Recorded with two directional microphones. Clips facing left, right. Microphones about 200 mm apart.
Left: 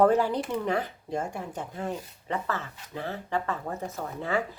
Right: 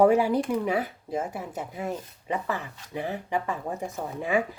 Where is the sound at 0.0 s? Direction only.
10° right (ahead or behind).